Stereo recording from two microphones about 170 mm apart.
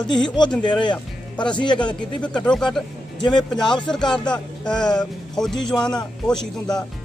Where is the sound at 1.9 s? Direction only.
5° left (ahead or behind).